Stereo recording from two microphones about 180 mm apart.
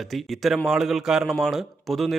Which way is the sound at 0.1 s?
Centre (ahead or behind).